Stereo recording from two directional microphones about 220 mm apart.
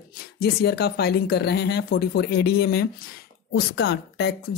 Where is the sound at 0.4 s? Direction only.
45° left (ahead or behind).